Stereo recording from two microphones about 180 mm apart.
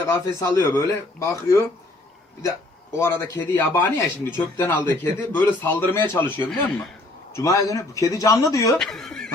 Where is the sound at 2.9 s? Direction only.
15° left (ahead or behind).